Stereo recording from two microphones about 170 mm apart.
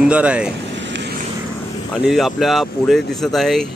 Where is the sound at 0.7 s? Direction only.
90° right.